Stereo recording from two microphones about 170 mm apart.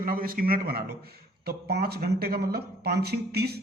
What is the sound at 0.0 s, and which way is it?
Speech, 55° right (ahead or behind).